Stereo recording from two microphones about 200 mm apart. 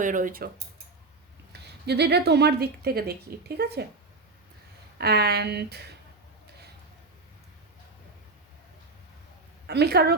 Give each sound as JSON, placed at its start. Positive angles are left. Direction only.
{"t": 0.0, "sound": "a woman's voice", "side_deg": -40}
{"t": 1.9, "sound": "a woman's voice", "side_deg": -55}
{"t": 4.9, "sound": "a woman's voice", "side_deg": -55}
{"t": 9.6, "sound": "a woman's voice", "side_deg": -55}